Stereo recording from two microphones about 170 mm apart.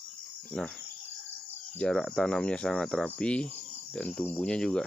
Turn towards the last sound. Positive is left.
turn(degrees=5)  # may be behind; listen again after turning